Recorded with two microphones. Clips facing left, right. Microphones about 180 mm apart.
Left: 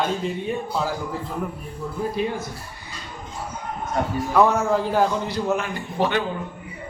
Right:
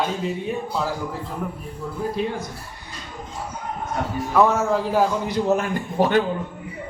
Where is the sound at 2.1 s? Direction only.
5° left (ahead or behind).